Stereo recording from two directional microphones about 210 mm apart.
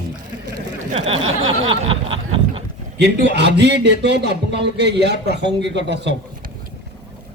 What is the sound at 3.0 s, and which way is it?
A man's voice, 55° right (ahead or behind).